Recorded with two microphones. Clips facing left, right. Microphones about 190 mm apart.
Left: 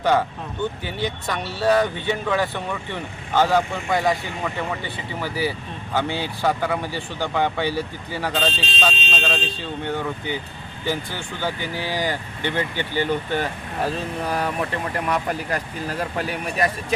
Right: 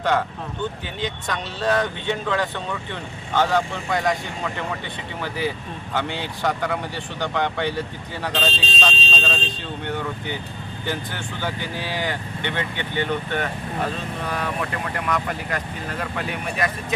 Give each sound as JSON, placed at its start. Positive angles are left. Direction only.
{"t": 0.0, "sound": "speech", "side_deg": 5}
{"t": 5.2, "sound": "speech", "side_deg": 5}
{"t": 10.8, "sound": "speech", "side_deg": 10}
{"t": 12.5, "sound": "speech", "side_deg": 35}